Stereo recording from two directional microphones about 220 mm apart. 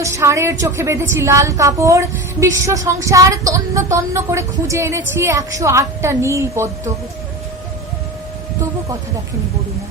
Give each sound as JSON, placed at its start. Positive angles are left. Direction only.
{"t": 0.0, "sound": "a woman's voice", "side_deg": -15}